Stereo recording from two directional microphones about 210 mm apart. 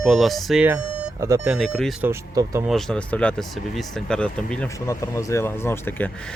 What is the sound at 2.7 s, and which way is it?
Speech, centre (ahead or behind).